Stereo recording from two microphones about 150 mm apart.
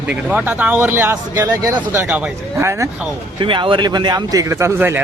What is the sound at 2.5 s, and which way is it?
Speech, 20° right (ahead or behind).